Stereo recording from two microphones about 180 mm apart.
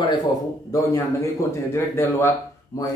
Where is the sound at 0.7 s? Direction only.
15° left (ahead or behind).